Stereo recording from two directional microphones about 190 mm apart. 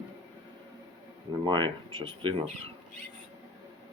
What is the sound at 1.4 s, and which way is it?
Speech, 25° right (ahead or behind).